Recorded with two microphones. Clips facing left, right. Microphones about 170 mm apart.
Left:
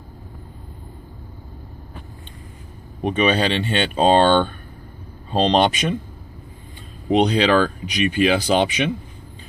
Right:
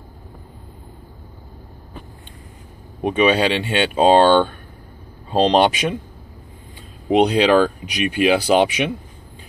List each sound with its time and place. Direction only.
3.0 s speech: 10° right (ahead or behind)
7.1 s speech: 5° right (ahead or behind)